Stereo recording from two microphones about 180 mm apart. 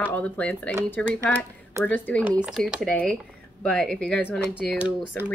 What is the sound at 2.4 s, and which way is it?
Speech, centre (ahead or behind).